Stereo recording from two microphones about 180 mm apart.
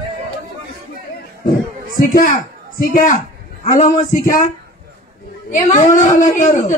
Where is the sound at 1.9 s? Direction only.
55° left (ahead or behind).